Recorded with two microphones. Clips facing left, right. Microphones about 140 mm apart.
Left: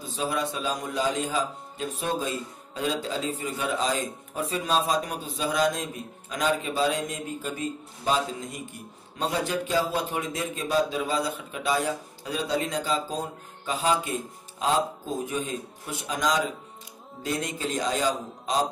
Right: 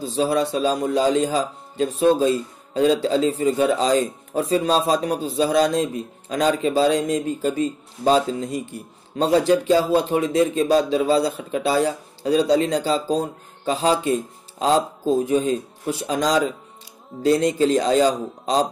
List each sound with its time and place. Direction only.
0.0 s speech: 35° right (ahead or behind)
14.6 s speech: 35° right (ahead or behind)